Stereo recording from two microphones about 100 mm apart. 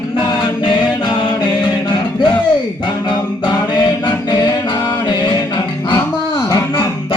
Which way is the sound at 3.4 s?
50° left (ahead or behind).